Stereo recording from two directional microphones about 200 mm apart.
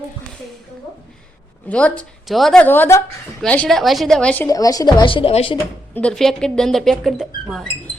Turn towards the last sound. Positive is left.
turn(degrees=0)  # may be behind; listen again after turning